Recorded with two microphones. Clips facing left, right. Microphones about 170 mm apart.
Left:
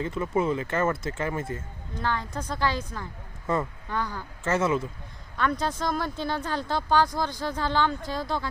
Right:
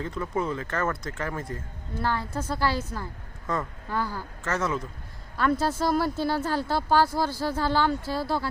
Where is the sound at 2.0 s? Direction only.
10° right (ahead or behind).